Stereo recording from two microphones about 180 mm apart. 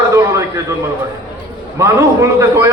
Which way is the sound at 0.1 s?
15° right (ahead or behind).